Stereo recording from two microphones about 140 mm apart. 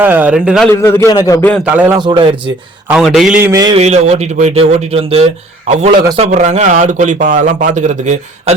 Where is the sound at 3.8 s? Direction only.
50° right (ahead or behind).